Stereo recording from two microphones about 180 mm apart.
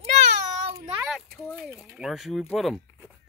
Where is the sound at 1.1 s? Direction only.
Centre (ahead or behind).